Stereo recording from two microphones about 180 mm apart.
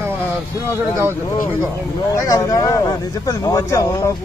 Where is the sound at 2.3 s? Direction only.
20° left (ahead or behind).